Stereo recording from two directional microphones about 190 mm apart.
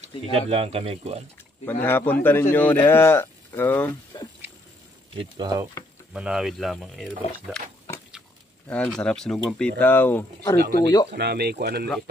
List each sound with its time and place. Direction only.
0.0 s speech: 30° right (ahead or behind)
1.7 s speech: 10° left (ahead or behind)
5.1 s speech: 25° right (ahead or behind)
6.1 s speech: 5° right (ahead or behind)
8.6 s speech: 5° left (ahead or behind)
11.1 s speech: 55° right (ahead or behind)